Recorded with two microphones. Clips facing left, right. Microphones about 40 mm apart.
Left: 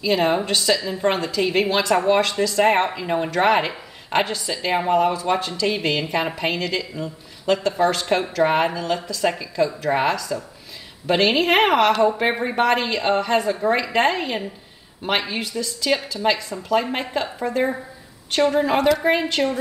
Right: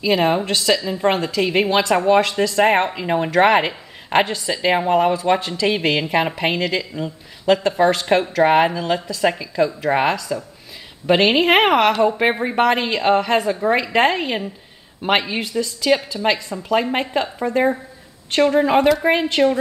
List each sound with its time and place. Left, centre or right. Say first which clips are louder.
0.0 s a woman's voice: right 2 dB; centre
2.8 s a woman's voice: right 1 dB; centre
3.1 s a woman's voice: right 5 dB; right; by 19.5 s centre